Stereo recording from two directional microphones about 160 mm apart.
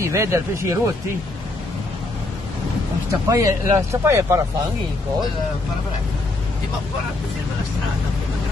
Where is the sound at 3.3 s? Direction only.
20° right (ahead or behind).